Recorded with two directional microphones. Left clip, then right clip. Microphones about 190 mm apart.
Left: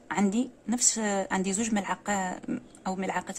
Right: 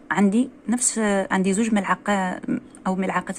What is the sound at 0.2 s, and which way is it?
A woman's voice, centre (ahead or behind).